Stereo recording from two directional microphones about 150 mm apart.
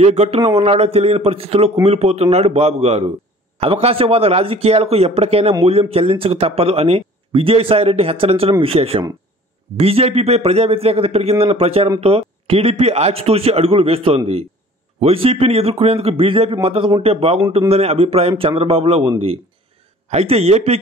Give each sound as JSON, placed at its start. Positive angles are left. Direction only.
{"t": 0.0, "sound": "speech", "side_deg": -45}